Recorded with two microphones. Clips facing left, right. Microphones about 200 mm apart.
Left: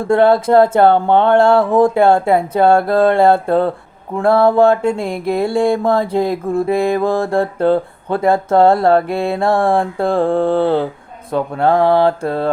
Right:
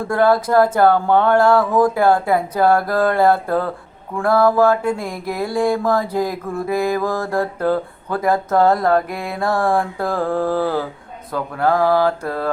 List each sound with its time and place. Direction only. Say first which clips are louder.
0.1 s mantra: left 5 dB; 25° left (ahead or behind)